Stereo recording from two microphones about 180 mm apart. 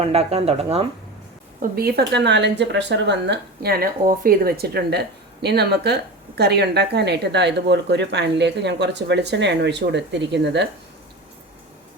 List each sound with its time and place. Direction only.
0.0 s speech: 35° right (ahead or behind)
1.7 s speech: 60° right (ahead or behind)